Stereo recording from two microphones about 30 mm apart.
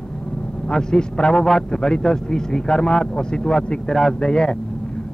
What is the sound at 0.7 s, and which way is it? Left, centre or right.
A man's voice, left.